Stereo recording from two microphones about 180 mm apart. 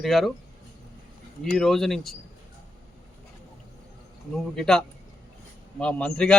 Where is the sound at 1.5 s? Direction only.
Centre (ahead or behind).